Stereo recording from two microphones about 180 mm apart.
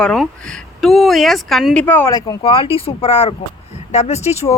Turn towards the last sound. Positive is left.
turn(degrees=35)  # may be behind; listen again after turning